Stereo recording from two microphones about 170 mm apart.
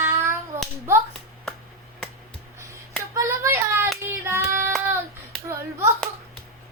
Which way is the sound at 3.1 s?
15° right (ahead or behind).